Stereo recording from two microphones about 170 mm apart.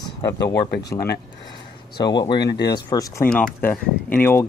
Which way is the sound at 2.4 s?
80° left.